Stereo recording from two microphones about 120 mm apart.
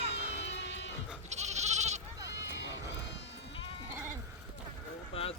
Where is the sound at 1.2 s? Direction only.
70° right (ahead or behind).